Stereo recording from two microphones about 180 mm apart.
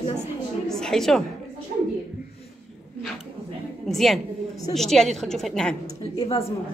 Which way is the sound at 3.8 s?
Centre (ahead or behind).